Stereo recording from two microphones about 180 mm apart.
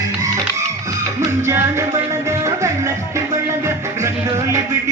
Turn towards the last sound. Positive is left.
turn(degrees=-15)  # may be behind; listen again after turning